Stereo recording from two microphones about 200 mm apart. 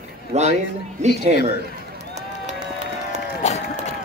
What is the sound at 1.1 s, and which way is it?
Speech, 55° left (ahead or behind).